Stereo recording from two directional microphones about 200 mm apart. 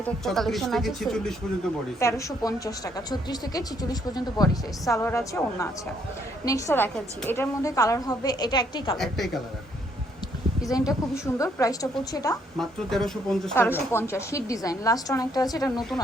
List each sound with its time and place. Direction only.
0.0 s a woman's voice: centre (ahead or behind)
2.0 s a woman's voice: 15° left (ahead or behind)
4.9 s a woman's voice: 15° left (ahead or behind)
9.0 s a woman's voice: centre (ahead or behind)
10.7 s a woman's voice: 20° left (ahead or behind)
12.5 s a woman's voice: centre (ahead or behind); by 15.8 s 20° left (ahead or behind)